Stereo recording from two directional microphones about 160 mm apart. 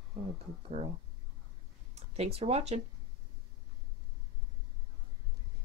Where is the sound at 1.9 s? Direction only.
40° right (ahead or behind).